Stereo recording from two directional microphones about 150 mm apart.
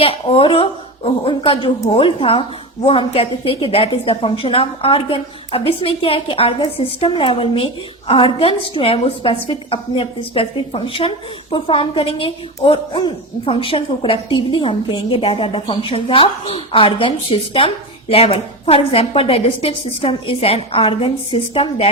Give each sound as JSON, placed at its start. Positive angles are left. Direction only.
{"t": 0.0, "sound": "a woman's voice", "side_deg": 40}